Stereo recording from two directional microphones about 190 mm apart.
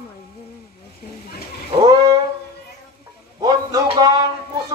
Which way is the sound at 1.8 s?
20° right (ahead or behind).